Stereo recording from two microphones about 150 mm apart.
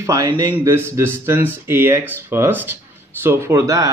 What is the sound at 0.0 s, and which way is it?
A man's voice, 20° right (ahead or behind).